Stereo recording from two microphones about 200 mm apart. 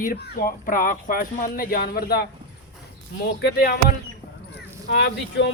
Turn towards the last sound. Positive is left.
turn(degrees=60)  # may be behind; listen again after turning